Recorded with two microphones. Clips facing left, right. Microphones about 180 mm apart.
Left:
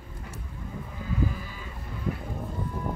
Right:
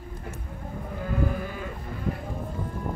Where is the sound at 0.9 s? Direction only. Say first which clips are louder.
Right 3 dB; 55° right (ahead or behind).